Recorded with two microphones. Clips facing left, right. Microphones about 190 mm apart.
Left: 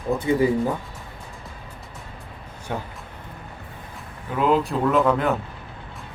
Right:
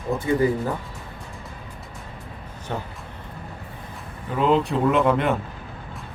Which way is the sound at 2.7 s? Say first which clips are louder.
Even; 10° left (ahead or behind).